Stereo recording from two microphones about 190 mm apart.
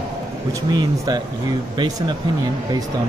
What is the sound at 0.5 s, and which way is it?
Speech, 15° right (ahead or behind).